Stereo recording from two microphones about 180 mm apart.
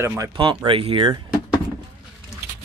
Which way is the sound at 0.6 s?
30° right (ahead or behind).